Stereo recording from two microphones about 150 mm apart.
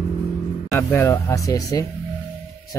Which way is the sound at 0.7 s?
20° left (ahead or behind).